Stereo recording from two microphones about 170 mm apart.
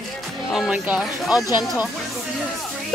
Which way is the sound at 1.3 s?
20° left (ahead or behind).